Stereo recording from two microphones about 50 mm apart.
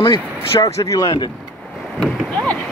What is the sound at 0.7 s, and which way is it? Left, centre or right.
Speech, left.